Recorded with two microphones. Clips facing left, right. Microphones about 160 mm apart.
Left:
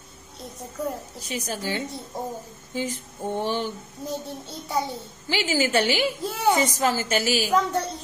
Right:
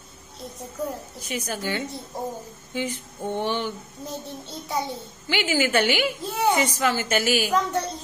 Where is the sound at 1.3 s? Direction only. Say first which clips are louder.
Right 1 dB; 35° left (ahead or behind).